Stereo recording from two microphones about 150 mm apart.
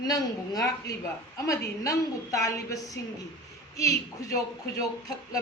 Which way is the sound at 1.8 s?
20° left (ahead or behind).